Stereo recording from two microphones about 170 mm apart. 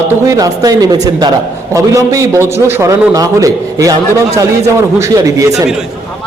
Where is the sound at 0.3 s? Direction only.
20° right (ahead or behind).